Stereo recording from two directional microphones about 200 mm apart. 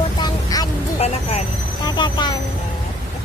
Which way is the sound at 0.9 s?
30° left (ahead or behind).